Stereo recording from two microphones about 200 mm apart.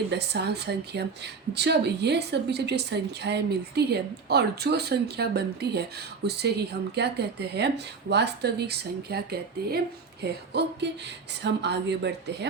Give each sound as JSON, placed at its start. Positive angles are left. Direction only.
{"t": 0.1, "sound": "a woman's voice", "side_deg": -55}